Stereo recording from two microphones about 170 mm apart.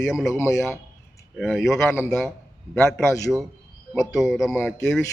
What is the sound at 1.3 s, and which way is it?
A man's voice, centre (ahead or behind).